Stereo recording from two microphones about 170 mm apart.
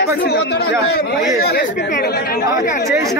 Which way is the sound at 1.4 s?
80° left.